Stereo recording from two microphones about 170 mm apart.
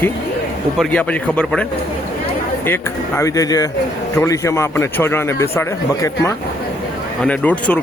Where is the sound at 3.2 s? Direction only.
20° left (ahead or behind).